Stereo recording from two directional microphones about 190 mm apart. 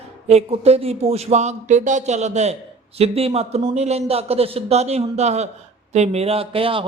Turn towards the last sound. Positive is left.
turn(degrees=-30)  # may be behind; listen again after turning